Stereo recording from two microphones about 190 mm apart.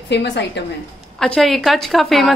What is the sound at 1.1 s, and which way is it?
A woman's voice, 5° left (ahead or behind).